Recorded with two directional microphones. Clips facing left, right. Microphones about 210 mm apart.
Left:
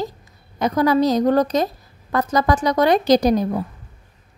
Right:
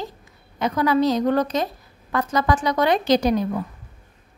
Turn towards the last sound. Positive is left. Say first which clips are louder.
# left 3 dB
turn(degrees=40)  # may be behind; listen again after turning